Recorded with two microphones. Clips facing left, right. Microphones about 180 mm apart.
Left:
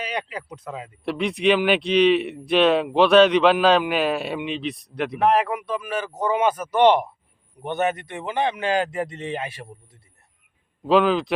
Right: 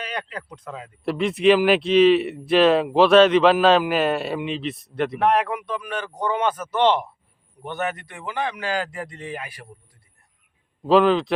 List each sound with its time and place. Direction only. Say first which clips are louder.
0.0 s speech: left 2 dB; 10° left (ahead or behind); by 9.6 s 25° left (ahead or behind)
10.8 s speech: right 2 dB; centre (ahead or behind)